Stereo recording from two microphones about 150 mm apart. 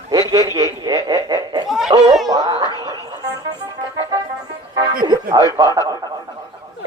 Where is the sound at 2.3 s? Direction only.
25° right (ahead or behind).